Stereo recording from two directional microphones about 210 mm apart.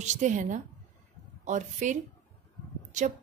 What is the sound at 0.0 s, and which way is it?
A woman's voice, 35° right (ahead or behind).